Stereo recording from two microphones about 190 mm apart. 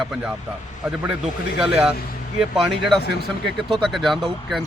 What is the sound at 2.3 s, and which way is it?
Speech, centre (ahead or behind).